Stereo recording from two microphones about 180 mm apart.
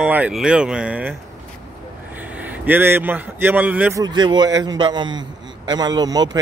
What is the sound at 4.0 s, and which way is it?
A man's voice, 25° right (ahead or behind).